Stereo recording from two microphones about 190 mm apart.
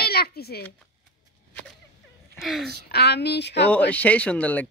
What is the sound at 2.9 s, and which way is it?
Speech, 60° left (ahead or behind).